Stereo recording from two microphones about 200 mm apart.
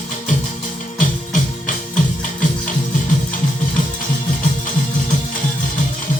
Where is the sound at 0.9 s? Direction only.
40° left (ahead or behind).